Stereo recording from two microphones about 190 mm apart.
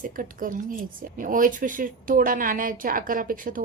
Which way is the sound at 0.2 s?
45° right (ahead or behind).